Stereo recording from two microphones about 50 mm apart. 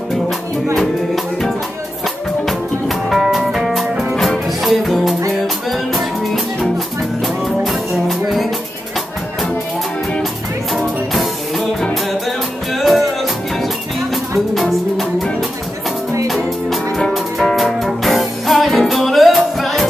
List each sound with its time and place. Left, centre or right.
0.7 s music: centre
3.8 s music: centre
4.5 s music: centre
10.7 s music: centre
14.1 s music: centre
17.1 s music: centre